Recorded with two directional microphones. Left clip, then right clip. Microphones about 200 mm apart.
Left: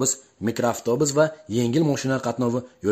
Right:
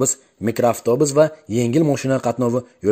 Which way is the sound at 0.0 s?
20° right (ahead or behind).